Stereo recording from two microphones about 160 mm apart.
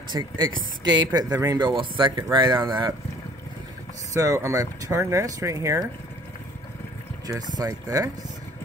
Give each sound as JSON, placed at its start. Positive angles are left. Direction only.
{"t": 0.1, "sound": "speech", "side_deg": -25}
{"t": 4.1, "sound": "speech", "side_deg": -20}
{"t": 7.5, "sound": "speech", "side_deg": -20}